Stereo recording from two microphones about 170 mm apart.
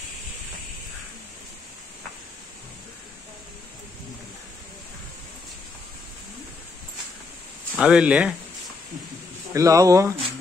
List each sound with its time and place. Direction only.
7.7 s speech: 5° right (ahead or behind)
9.5 s speech: 20° right (ahead or behind)